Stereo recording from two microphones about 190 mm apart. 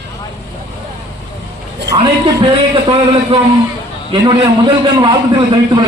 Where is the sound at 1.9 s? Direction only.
30° right (ahead or behind).